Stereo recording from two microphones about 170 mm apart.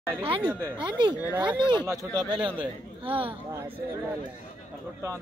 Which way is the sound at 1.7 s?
25° right (ahead or behind).